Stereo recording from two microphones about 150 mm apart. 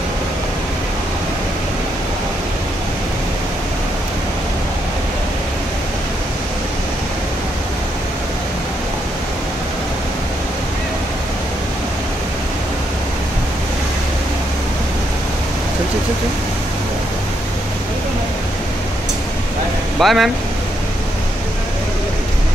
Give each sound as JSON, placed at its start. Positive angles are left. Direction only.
{"t": 20.0, "sound": "speech", "side_deg": 0}